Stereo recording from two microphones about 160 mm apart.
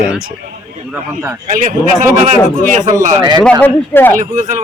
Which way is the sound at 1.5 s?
55° right (ahead or behind).